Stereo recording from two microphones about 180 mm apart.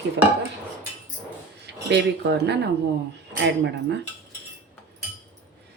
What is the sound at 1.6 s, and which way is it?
Speech, 75° right (ahead or behind).